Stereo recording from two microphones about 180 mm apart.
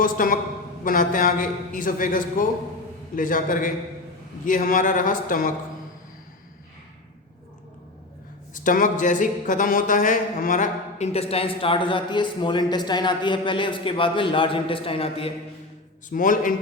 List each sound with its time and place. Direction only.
0.0 s a man's voice: 50° left (ahead or behind)
8.5 s a sound: 45° left (ahead or behind)
16.0 s a man's voice: 50° left (ahead or behind)